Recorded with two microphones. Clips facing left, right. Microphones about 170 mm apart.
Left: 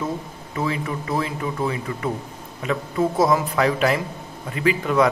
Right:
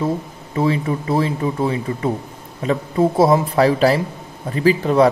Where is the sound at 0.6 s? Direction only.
30° right (ahead or behind).